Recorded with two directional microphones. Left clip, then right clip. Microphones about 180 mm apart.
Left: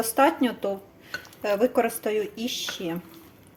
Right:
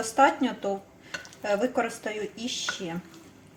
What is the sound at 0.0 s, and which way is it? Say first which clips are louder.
Speech: left 1 dB; 35° left (ahead or behind).